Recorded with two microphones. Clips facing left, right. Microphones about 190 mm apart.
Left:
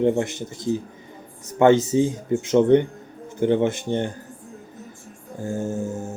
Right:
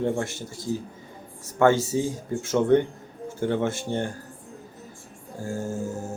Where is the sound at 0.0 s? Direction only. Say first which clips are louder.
Left 6 dB; 20° left (ahead or behind).